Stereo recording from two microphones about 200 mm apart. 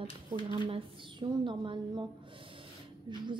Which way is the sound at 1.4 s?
25° right (ahead or behind).